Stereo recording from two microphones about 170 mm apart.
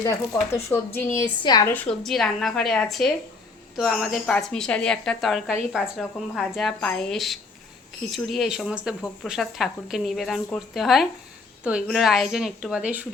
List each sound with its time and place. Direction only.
0.9 s a woman's voice: 15° left (ahead or behind)
1.6 s speech: 10° left (ahead or behind); by 13.1 s 10° right (ahead or behind)